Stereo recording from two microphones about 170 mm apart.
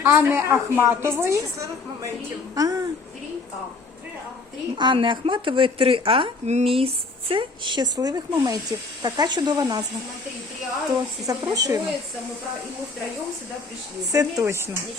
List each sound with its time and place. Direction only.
0.0 s a woman's voice: 10° right (ahead or behind)
4.8 s speech: 30° right (ahead or behind)
10.8 s speech: 20° right (ahead or behind)
14.1 s a woman's voice: 20° right (ahead or behind)